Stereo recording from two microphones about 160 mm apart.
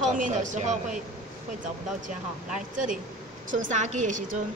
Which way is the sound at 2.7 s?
55° right (ahead or behind).